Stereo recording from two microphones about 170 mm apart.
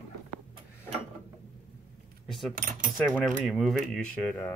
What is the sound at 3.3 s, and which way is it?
Speech, centre (ahead or behind).